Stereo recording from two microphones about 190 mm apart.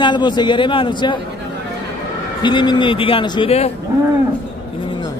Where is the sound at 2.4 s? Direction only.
25° left (ahead or behind).